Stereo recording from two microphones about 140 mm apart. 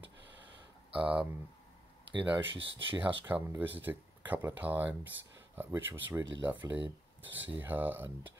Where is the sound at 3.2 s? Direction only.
15° right (ahead or behind).